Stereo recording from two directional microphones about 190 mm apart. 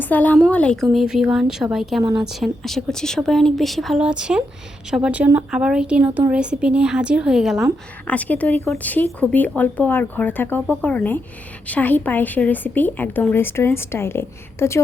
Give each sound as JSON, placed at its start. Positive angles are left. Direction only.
{"t": 0.0, "sound": "a woman's voice", "side_deg": 10}